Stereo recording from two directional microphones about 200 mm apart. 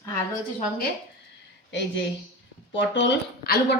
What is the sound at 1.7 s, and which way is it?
A woman's voice, 60° left (ahead or behind).